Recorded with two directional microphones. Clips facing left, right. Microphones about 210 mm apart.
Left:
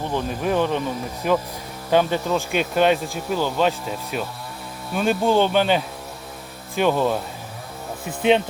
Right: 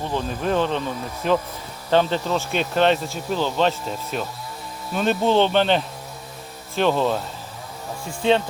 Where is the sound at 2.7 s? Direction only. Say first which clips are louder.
Even; 10° left (ahead or behind).